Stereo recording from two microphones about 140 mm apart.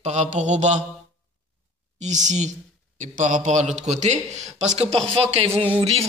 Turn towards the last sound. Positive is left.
turn(degrees=-45)  # may be behind; listen again after turning